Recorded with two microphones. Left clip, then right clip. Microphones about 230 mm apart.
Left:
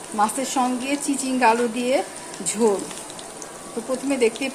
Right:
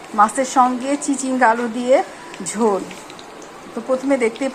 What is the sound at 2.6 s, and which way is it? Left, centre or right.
Speech, centre.